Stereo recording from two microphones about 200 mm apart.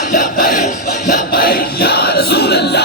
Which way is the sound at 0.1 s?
40° left (ahead or behind).